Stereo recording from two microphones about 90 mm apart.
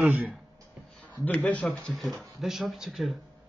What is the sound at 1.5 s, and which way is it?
Speech, 15° left (ahead or behind).